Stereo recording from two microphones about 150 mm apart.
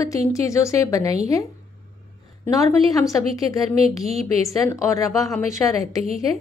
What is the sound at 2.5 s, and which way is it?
Speech, 20° left (ahead or behind).